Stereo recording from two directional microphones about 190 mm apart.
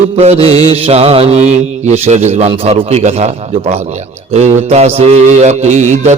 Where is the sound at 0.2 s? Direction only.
35° right (ahead or behind).